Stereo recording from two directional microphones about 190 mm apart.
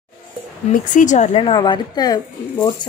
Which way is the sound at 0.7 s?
40° left (ahead or behind).